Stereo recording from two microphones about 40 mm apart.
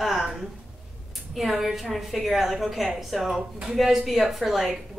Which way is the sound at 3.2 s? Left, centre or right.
Centre.